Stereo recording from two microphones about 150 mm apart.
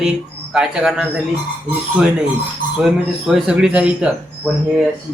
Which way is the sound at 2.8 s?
Centre (ahead or behind).